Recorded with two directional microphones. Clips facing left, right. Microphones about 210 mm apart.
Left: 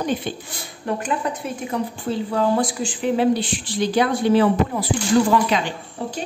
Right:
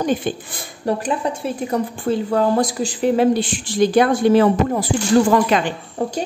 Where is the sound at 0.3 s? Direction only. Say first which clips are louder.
Right 5 dB; 50° right (ahead or behind).